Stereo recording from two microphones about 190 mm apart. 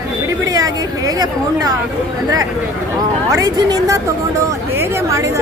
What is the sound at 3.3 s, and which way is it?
A woman's voice, 20° right (ahead or behind).